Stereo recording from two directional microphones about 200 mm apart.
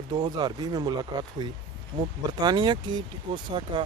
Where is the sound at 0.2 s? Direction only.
20° right (ahead or behind).